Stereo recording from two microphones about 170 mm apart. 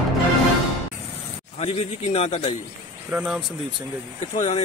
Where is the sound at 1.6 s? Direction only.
40° left (ahead or behind).